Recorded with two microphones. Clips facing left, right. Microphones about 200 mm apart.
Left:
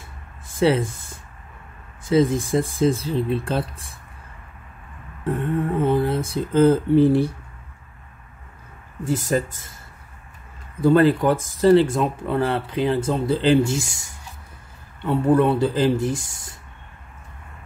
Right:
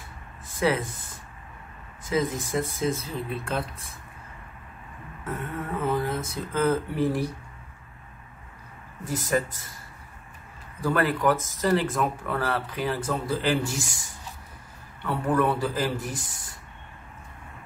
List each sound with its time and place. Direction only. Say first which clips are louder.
0.6 s speech: left 6 dB; 25° left (ahead or behind)
2.0 s speech: left 8 dB; 30° left (ahead or behind)
5.2 s a sound: left 10 dB; 30° left (ahead or behind)
9.0 s speech: left 4 dB; 30° left (ahead or behind)
10.8 s speech: left 9 dB; 25° left (ahead or behind)
15.0 s speech: left 7 dB; 25° left (ahead or behind)